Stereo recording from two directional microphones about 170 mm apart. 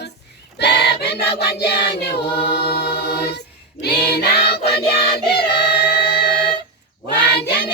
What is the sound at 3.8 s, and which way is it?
Singing, 70° left (ahead or behind).